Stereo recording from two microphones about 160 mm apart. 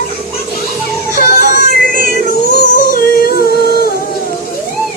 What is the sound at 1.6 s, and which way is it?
Synthetic singing, 60° right (ahead or behind).